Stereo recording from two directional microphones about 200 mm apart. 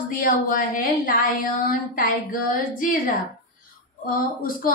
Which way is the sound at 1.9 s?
45° left (ahead or behind).